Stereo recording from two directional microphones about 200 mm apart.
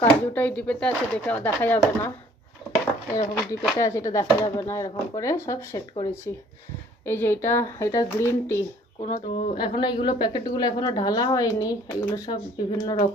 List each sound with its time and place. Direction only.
0.0 s speech: 10° left (ahead or behind)
3.7 s speech: 15° left (ahead or behind)
9.0 s speech: 35° left (ahead or behind)
9.6 s a woman's voice: 25° left (ahead or behind)